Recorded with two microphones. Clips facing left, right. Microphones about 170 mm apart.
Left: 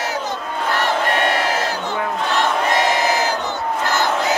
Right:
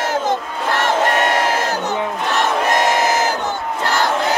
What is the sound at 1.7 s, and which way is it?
Crowd, 45° right (ahead or behind).